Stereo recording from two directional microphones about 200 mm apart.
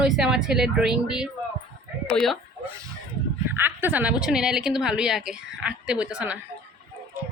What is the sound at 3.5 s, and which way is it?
A woman's voice, 10° right (ahead or behind).